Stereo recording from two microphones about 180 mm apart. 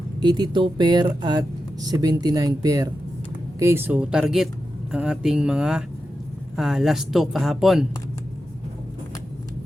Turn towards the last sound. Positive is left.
turn(degrees=0)  # may be behind; listen again after turning